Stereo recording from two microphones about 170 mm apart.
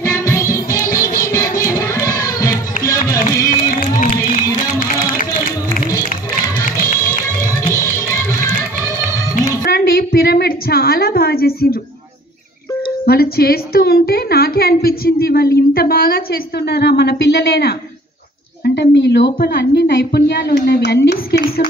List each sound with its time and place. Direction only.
0.0 s music: 20° left (ahead or behind)
3.7 s music: 50° left (ahead or behind)
8.1 s music: 15° left (ahead or behind)
9.6 s a sound: 60° left (ahead or behind)
13.0 s a woman's voice: 65° left (ahead or behind)
18.6 s a woman's voice: 85° left
19.3 s a woman's voice: 75° left (ahead or behind)